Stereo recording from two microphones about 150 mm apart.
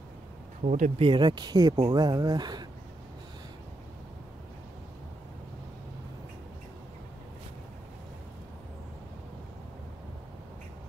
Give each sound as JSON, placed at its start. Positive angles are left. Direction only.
{"t": 0.7, "sound": "speech", "side_deg": -50}
{"t": 1.0, "sound": "speech", "side_deg": -30}